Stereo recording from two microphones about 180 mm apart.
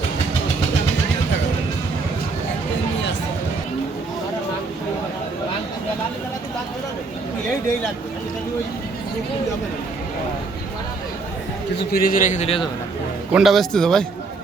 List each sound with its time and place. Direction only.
11.8 s a man's voice: 55° left (ahead or behind); by 12.6 s 35° left (ahead or behind)
13.3 s speech: centre (ahead or behind)